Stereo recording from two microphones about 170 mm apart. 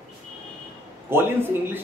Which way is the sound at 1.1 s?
15° right (ahead or behind).